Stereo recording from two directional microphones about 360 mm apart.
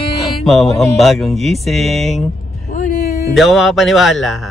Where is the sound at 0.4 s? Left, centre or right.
Centre.